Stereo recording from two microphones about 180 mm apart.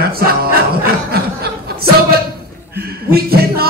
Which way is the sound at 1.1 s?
60° right (ahead or behind).